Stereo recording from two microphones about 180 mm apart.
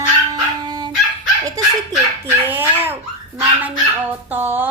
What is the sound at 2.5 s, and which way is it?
Dog, 10° right (ahead or behind).